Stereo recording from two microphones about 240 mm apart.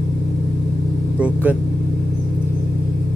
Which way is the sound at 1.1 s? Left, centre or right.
Centre.